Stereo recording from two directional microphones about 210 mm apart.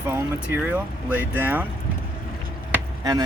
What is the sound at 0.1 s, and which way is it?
Speech, 10° right (ahead or behind).